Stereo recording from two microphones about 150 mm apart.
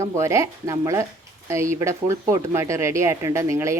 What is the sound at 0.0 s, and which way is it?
A woman's voice, 20° right (ahead or behind).